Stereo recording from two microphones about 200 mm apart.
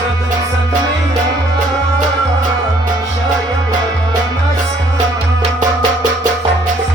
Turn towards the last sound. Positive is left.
turn(degrees=-40)  # may be behind; listen again after turning